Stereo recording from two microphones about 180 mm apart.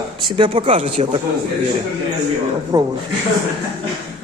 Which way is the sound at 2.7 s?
20° right (ahead or behind).